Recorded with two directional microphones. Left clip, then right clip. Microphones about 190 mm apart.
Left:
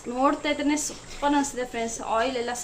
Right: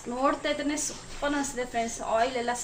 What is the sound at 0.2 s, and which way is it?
A woman's voice, 20° left (ahead or behind).